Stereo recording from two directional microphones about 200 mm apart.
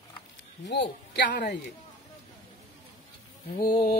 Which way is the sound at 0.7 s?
60° left (ahead or behind).